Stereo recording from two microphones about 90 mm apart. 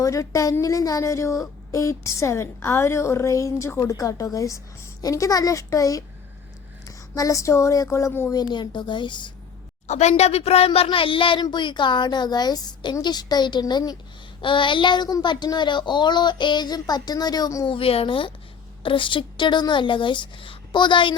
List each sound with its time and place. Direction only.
0.0 s a woman's voice: 40° left (ahead or behind)
7.2 s a woman's voice: 35° left (ahead or behind)
8.3 s speech: 50° left (ahead or behind)
10.4 s speech: 90° left; by 11.4 s 70° left (ahead or behind)
11.4 s a woman's voice: 55° left (ahead or behind)
14.4 s speech: 65° left (ahead or behind); by 17.7 s 45° left (ahead or behind)
17.7 s speech: 90° left; by 21.2 s 65° left (ahead or behind)